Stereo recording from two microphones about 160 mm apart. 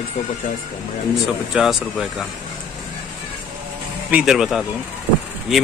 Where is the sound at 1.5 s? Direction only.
5° right (ahead or behind).